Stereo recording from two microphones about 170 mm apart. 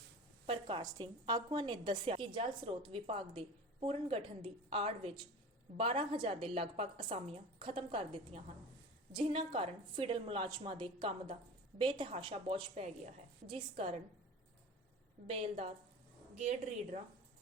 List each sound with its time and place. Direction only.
0.4 s a woman's voice: 30° right (ahead or behind)
15.3 s a woman's voice: 35° right (ahead or behind)